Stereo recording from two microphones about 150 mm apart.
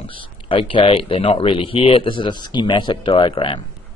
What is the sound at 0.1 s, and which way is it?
Speech, 35° left (ahead or behind).